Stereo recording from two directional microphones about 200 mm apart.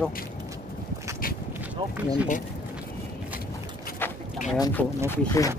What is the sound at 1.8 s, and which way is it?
Speech, 25° right (ahead or behind).